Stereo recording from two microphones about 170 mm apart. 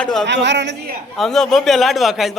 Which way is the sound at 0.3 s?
90° right.